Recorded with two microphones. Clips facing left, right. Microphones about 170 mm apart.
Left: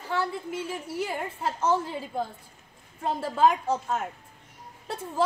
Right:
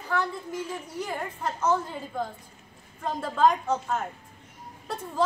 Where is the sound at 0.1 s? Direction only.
25° left (ahead or behind).